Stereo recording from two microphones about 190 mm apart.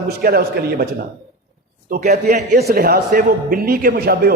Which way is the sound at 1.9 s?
40° right (ahead or behind).